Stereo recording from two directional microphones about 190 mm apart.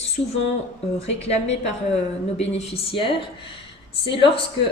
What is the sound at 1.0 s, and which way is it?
Speech, 35° left (ahead or behind).